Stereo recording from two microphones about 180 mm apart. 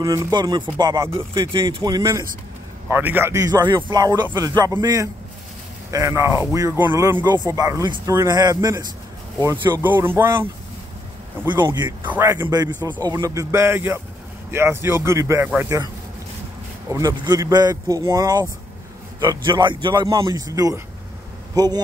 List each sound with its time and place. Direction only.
0.0 s a man's voice: 20° right (ahead or behind)
11.6 s a man's voice: 20° right (ahead or behind)
16.9 s speech: 20° right (ahead or behind)